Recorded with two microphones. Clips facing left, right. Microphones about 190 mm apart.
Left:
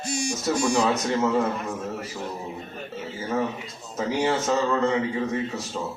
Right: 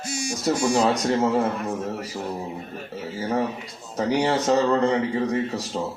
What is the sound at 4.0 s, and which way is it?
Speech, 35° right (ahead or behind).